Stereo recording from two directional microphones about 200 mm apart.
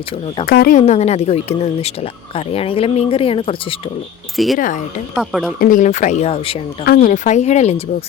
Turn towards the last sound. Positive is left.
turn(degrees=35)  # may be behind; listen again after turning